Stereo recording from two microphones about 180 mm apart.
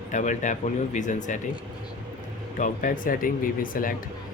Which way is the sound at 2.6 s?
50° left (ahead or behind).